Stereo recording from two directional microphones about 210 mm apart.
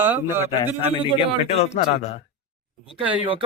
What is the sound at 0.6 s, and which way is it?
A man's voice, 20° left (ahead or behind).